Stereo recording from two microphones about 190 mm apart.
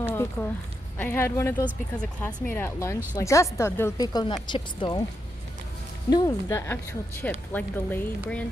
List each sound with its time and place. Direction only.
0.0 s a sound: 10° left (ahead or behind)
0.9 s a woman's voice: 10° left (ahead or behind)
6.0 s speech: 20° left (ahead or behind)